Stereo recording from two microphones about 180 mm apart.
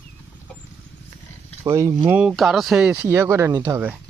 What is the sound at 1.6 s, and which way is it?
Speech, 15° right (ahead or behind).